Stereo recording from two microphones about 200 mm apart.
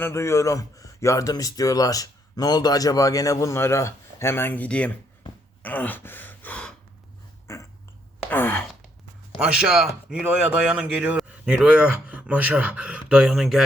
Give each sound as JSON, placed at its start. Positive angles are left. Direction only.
{"t": 0.0, "sound": "speech", "side_deg": 15}
{"t": 5.6, "sound": "gasp", "side_deg": 10}
{"t": 7.4, "sound": "dog", "side_deg": 15}
{"t": 8.3, "sound": "speech", "side_deg": 10}
{"t": 9.4, "sound": "speech", "side_deg": -5}